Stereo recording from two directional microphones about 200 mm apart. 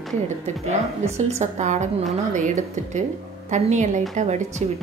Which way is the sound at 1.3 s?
35° right (ahead or behind).